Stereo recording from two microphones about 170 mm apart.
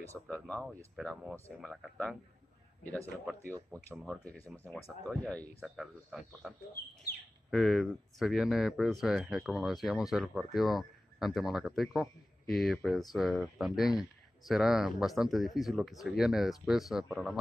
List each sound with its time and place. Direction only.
0.1 s speech: 5° left (ahead or behind)
4.8 s speech: 10° left (ahead or behind)
5.6 s speech: 5° right (ahead or behind)
7.5 s speech: centre (ahead or behind)